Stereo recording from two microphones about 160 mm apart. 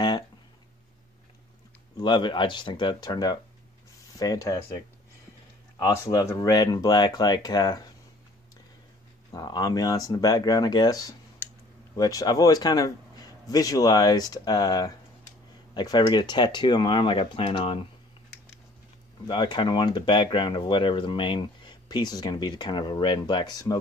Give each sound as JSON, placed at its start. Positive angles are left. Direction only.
{"t": 2.0, "sound": "speech", "side_deg": 30}
{"t": 5.8, "sound": "speech", "side_deg": 20}
{"t": 9.3, "sound": "speech", "side_deg": 25}
{"t": 19.2, "sound": "speech", "side_deg": 30}